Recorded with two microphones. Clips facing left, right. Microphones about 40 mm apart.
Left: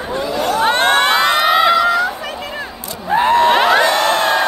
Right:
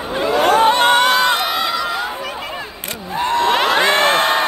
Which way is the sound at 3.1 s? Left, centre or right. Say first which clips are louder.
Left 5 dB; centre.